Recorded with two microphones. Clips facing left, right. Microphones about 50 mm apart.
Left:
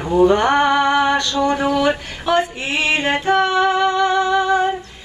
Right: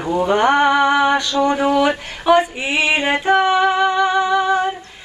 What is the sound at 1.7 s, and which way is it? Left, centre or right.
Female singing, centre.